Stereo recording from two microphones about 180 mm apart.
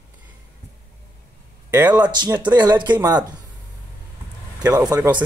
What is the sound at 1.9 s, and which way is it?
Speech, 25° right (ahead or behind).